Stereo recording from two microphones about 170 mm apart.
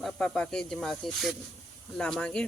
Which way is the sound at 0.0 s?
5° left (ahead or behind).